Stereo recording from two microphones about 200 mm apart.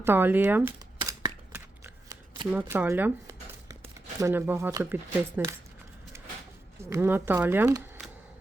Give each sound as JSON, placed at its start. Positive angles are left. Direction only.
{"t": 0.0, "sound": "speech", "side_deg": -10}
{"t": 0.9, "sound": "shuffling cards", "side_deg": -15}
{"t": 2.5, "sound": "speech", "side_deg": -10}
{"t": 6.1, "sound": "vehicle", "side_deg": -15}
{"t": 6.9, "sound": "speech", "side_deg": -10}